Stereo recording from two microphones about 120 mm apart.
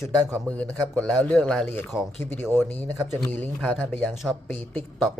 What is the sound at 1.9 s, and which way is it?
Speech, 5° right (ahead or behind).